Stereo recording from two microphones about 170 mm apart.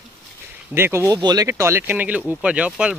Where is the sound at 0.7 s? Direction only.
15° right (ahead or behind).